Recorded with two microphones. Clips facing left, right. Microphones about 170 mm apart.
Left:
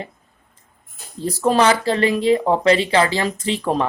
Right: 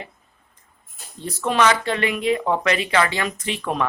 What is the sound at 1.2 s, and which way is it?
Speech, 35° left (ahead or behind).